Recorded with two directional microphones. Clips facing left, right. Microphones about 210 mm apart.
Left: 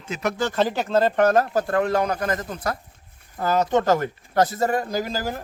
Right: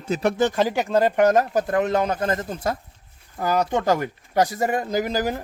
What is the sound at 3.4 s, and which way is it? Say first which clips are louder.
Speech: left 1 dB; 10° right (ahead or behind).